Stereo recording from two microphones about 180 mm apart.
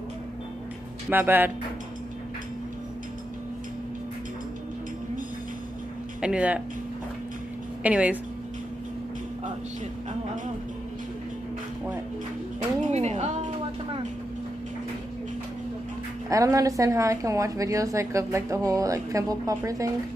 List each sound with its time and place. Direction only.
1.1 s a woman's voice: 10° right (ahead or behind)
6.2 s a woman's voice: 5° right (ahead or behind)
7.8 s a woman's voice: 10° right (ahead or behind)
12.9 s music: 40° right (ahead or behind)
16.3 s a woman's voice: 20° right (ahead or behind)